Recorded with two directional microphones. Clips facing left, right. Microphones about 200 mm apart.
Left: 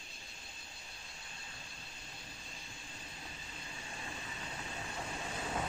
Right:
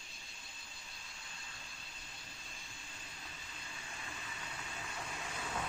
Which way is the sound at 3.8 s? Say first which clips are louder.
Left 3 dB; 30° left (ahead or behind).